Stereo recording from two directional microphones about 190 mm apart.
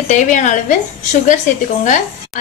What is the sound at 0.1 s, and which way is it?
Speech, 40° left (ahead or behind).